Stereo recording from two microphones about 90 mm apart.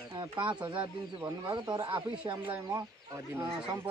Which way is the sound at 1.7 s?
60° right (ahead or behind).